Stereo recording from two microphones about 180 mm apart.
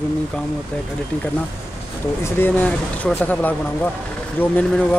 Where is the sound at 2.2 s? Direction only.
10° left (ahead or behind).